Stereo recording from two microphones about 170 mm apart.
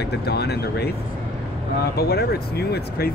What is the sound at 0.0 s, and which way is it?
Speech, 75° left (ahead or behind).